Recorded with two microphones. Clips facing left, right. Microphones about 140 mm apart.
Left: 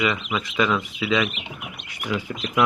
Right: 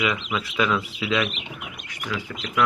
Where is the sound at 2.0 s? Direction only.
20° left (ahead or behind).